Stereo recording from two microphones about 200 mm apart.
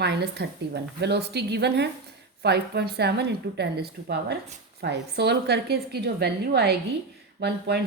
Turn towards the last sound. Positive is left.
turn(degrees=-55)  # may be behind; listen again after turning